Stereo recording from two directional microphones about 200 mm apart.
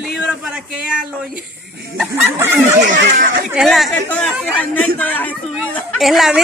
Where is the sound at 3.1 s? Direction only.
45° right (ahead or behind).